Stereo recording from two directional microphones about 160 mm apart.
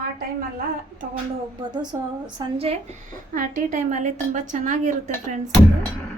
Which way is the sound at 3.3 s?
55° right (ahead or behind).